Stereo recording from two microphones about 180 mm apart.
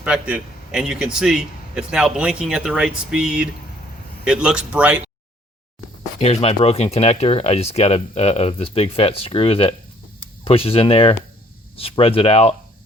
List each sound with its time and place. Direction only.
0.0 s a man's voice: 5° right (ahead or behind)
6.1 s speech: 35° left (ahead or behind)